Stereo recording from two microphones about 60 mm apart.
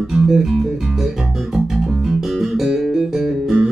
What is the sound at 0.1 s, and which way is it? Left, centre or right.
Music, centre.